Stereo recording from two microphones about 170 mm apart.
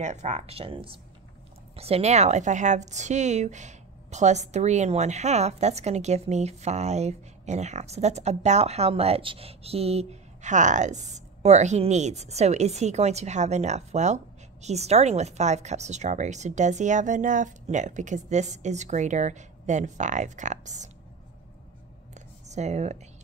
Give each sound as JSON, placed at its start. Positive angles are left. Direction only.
{"t": 0.0, "sound": "a woman's voice", "side_deg": -45}
{"t": 22.5, "sound": "speech", "side_deg": -40}